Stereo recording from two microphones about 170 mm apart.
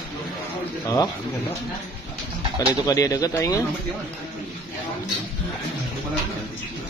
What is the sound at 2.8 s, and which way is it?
Speech, 20° left (ahead or behind).